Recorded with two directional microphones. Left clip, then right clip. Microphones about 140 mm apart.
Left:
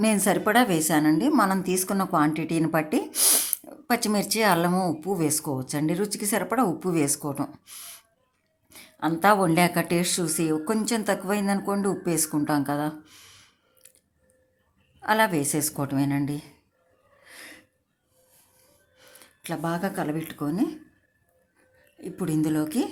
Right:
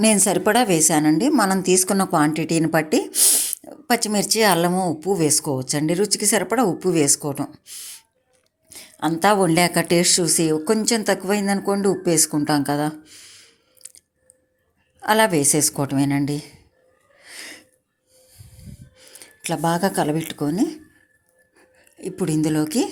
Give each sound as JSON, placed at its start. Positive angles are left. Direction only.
{"t": 0.0, "sound": "a woman's voice", "side_deg": -25}
{"t": 3.1, "sound": "speech", "side_deg": 0}
{"t": 3.6, "sound": "a woman's voice", "side_deg": -15}
{"t": 7.4, "sound": "speech", "side_deg": -5}
{"t": 8.7, "sound": "a woman's voice", "side_deg": -20}
{"t": 13.1, "sound": "a sound", "side_deg": -10}
{"t": 15.0, "sound": "a woman's voice", "side_deg": -25}
{"t": 17.2, "sound": "sneeze", "side_deg": -25}
{"t": 18.5, "sound": "snort", "side_deg": -10}
{"t": 19.2, "sound": "a woman's voice", "side_deg": -25}
{"t": 21.9, "sound": "a woman's voice", "side_deg": -25}